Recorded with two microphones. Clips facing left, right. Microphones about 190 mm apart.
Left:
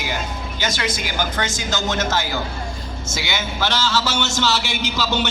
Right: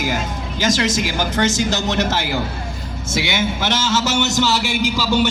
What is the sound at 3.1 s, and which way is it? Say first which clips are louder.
A man's voice: right 7 dB; 25° right (ahead or behind).